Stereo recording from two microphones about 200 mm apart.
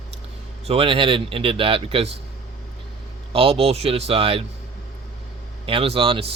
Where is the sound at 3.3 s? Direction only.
30° right (ahead or behind).